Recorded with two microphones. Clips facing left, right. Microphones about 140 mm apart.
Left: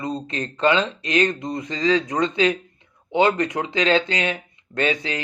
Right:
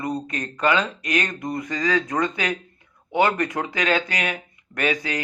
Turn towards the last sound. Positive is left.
turn(degrees=25)  # may be behind; listen again after turning